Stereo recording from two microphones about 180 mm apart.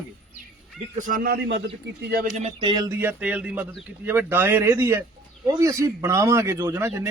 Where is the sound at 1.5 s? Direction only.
70° right (ahead or behind).